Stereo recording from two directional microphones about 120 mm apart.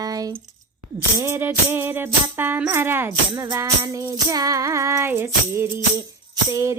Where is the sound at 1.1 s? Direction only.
20° right (ahead or behind).